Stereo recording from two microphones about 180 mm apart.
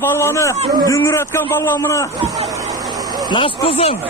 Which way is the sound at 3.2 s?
25° left (ahead or behind).